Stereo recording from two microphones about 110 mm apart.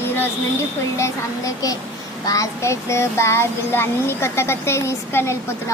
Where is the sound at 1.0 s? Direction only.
30° left (ahead or behind).